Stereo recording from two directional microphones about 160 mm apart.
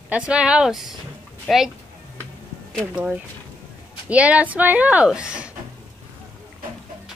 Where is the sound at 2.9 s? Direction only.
10° right (ahead or behind).